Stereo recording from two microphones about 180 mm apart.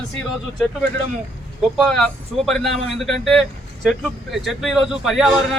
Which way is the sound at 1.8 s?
5° left (ahead or behind).